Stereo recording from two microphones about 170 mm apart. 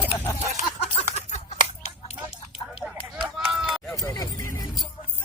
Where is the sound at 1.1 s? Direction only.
40° left (ahead or behind).